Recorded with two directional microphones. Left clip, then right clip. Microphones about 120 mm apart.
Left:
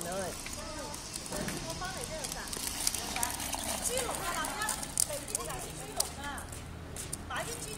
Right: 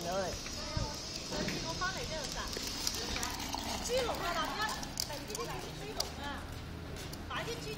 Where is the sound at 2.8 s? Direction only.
5° left (ahead or behind).